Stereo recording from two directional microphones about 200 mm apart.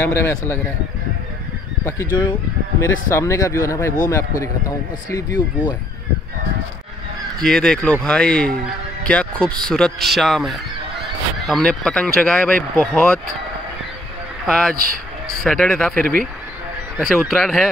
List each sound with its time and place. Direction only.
0.0 s speech: 10° left (ahead or behind)
2.8 s speech: 15° left (ahead or behind)
7.4 s speech: 5° left (ahead or behind)
14.4 s speech: centre (ahead or behind)